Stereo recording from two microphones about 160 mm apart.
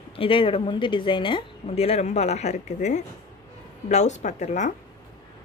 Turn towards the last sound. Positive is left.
turn(degrees=50)  # may be behind; listen again after turning